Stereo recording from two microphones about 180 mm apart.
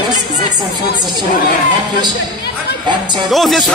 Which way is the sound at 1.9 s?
25° right (ahead or behind).